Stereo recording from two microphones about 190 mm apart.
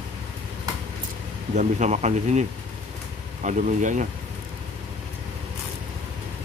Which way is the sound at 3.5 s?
40° right (ahead or behind).